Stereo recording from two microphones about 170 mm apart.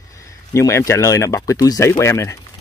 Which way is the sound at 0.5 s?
15° left (ahead or behind).